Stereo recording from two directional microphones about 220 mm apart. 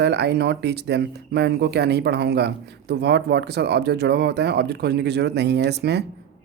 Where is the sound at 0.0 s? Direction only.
50° right (ahead or behind).